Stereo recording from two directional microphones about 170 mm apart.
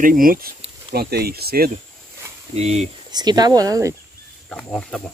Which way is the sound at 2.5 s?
40° right (ahead or behind).